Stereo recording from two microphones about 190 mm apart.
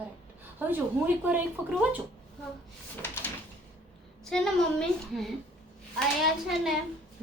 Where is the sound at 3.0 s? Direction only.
10° left (ahead or behind).